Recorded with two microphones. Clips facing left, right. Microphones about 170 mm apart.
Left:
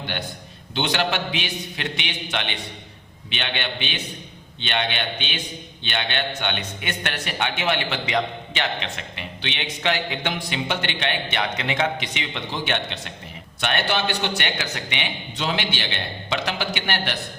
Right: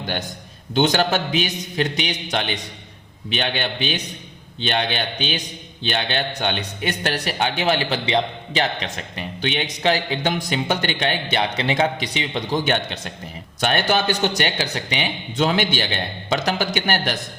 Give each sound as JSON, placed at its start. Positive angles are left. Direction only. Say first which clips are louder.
{"t": 0.0, "sound": "a man's voice", "louder": "right 3 dB", "side_deg": -40}